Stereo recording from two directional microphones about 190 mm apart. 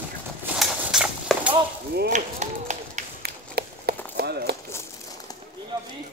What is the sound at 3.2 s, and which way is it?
Run, 55° right (ahead or behind).